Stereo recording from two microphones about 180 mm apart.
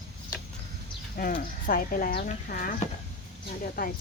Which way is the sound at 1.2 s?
50° left (ahead or behind).